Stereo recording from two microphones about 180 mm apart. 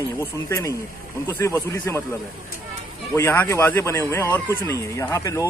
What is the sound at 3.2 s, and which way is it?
A man's voice, 15° left (ahead or behind).